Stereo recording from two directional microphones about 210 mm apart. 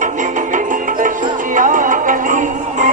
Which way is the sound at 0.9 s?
40° right (ahead or behind).